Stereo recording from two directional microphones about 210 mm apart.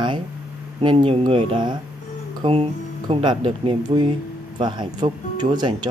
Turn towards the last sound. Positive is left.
turn(degrees=-20)  # may be behind; listen again after turning